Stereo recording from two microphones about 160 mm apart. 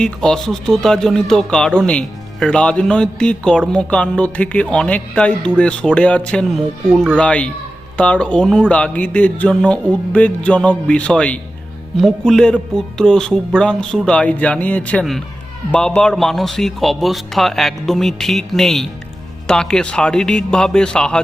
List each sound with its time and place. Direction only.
0.0 s speech: 5° left (ahead or behind)